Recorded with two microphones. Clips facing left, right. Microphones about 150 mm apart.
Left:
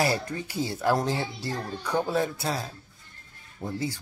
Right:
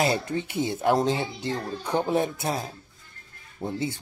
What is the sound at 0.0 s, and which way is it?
Speech, 25° right (ahead or behind).